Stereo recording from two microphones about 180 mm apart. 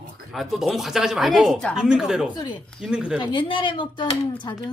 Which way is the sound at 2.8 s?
5° right (ahead or behind).